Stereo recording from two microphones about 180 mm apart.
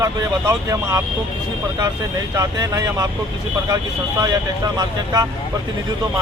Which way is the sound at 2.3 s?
20° right (ahead or behind).